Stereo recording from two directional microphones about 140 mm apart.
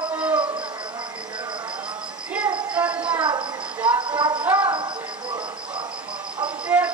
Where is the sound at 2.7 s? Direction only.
10° right (ahead or behind).